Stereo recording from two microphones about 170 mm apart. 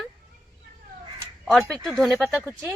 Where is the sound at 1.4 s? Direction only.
Centre (ahead or behind).